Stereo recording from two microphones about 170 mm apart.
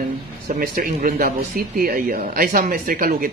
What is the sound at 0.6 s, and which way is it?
Speech, 55° right (ahead or behind).